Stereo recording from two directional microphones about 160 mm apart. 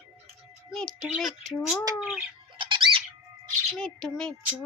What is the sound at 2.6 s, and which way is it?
Squawk, 30° right (ahead or behind).